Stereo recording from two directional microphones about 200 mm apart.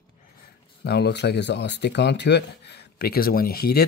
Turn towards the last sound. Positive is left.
turn(degrees=50)  # may be behind; listen again after turning